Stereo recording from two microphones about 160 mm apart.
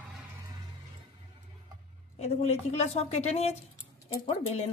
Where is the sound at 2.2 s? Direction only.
45° left (ahead or behind).